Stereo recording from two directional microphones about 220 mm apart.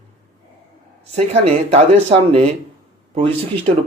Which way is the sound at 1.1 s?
30° right (ahead or behind).